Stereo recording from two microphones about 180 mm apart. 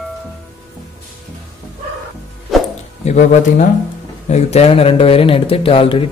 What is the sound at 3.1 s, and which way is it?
Speech, 45° left (ahead or behind).